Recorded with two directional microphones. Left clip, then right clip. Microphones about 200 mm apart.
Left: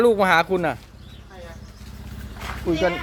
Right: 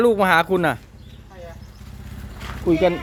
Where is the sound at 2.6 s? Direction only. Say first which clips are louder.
Right 4 dB; 25° right (ahead or behind).